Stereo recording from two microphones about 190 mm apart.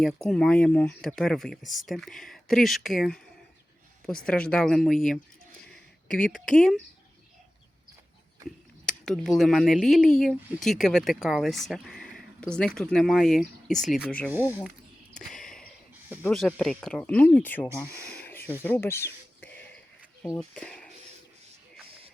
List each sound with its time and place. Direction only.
0.3 s speech: 5° left (ahead or behind)
8.9 s speech: 5° left (ahead or behind)
14.3 s speech: 10° right (ahead or behind)
15.2 s a sound: centre (ahead or behind)
16.0 s speech: 10° right (ahead or behind)
16.3 s speech: centre (ahead or behind)
17.7 s a sound: 10° left (ahead or behind)
20.2 s speech: 10° left (ahead or behind)